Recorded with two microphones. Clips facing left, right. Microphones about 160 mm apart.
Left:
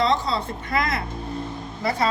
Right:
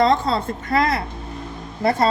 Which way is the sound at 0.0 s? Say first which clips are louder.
Right 4 dB; 50° right (ahead or behind).